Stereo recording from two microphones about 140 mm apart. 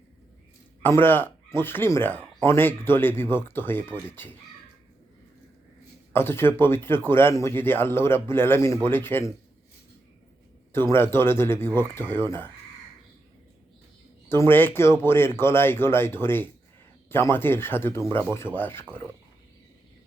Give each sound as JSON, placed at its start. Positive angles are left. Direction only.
{"t": 0.8, "sound": "speech", "side_deg": 15}
{"t": 6.1, "sound": "speech", "side_deg": 15}
{"t": 10.7, "sound": "speech", "side_deg": 15}
{"t": 14.3, "sound": "speech", "side_deg": 15}